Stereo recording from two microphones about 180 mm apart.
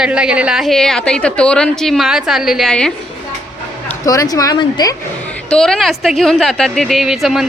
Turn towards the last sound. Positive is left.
turn(degrees=0)  # may be behind; listen again after turning